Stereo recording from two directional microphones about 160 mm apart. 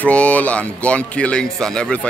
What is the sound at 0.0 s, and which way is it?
Speech, 10° left (ahead or behind).